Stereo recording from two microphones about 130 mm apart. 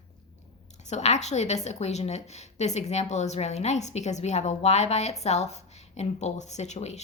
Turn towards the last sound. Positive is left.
turn(degrees=60)  # may be behind; listen again after turning